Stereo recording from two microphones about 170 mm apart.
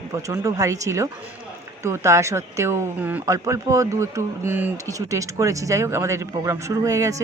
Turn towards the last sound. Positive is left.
turn(degrees=-20)  # may be behind; listen again after turning